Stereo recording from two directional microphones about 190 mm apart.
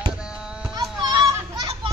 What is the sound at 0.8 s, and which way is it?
Children playing, 20° right (ahead or behind).